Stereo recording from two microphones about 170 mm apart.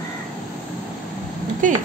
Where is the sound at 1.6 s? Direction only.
50° right (ahead or behind).